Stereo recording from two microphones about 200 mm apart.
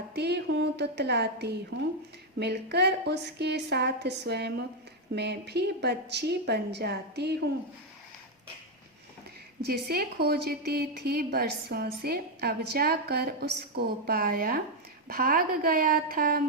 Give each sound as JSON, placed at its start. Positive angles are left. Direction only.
{"t": 0.1, "sound": "a sound", "side_deg": -55}
{"t": 2.4, "sound": "a woman's voice", "side_deg": -55}
{"t": 9.6, "sound": "a woman's voice", "side_deg": -50}